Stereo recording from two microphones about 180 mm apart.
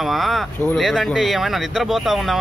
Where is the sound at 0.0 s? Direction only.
Centre (ahead or behind).